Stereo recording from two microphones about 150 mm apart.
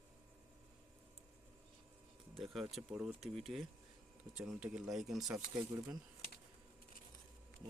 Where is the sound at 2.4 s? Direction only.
Centre (ahead or behind).